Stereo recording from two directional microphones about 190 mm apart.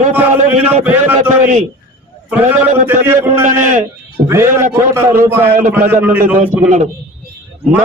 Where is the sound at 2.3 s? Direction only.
10° right (ahead or behind).